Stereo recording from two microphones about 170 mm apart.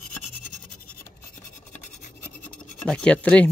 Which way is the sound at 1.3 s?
45° left (ahead or behind).